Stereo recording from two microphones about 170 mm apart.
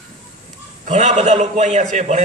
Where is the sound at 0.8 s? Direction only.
40° right (ahead or behind).